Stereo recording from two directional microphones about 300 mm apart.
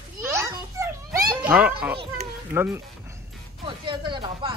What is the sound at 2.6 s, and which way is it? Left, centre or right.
Speech, centre.